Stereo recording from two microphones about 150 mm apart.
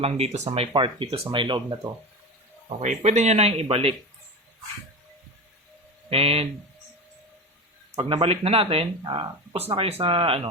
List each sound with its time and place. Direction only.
0.0 s speech: 45° right (ahead or behind)
2.8 s speech: 50° right (ahead or behind)
6.1 s speech: 40° right (ahead or behind)
7.9 s speech: 35° right (ahead or behind)
9.6 s speech: 40° right (ahead or behind)